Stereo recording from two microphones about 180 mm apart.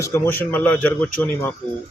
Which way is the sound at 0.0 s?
15° left (ahead or behind).